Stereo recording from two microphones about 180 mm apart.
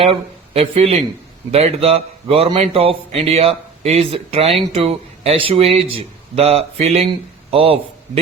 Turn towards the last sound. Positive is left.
turn(degrees=-30)  # may be behind; listen again after turning